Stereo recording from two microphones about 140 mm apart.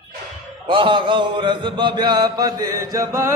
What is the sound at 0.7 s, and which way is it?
Chant, 35° right (ahead or behind).